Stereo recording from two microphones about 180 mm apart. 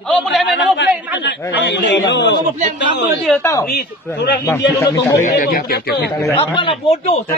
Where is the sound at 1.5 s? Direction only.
80° left.